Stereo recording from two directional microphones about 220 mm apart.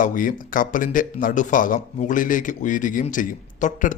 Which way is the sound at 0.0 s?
40° left (ahead or behind).